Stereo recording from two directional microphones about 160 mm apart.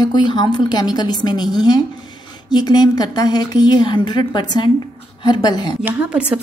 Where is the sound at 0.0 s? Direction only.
30° left (ahead or behind).